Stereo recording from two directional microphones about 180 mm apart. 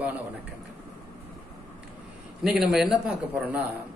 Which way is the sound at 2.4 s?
Centre (ahead or behind).